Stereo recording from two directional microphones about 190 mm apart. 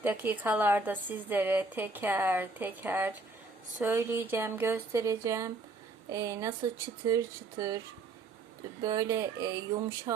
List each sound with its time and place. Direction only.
0.0 s speech: 10° right (ahead or behind)
8.8 s speech: 20° right (ahead or behind)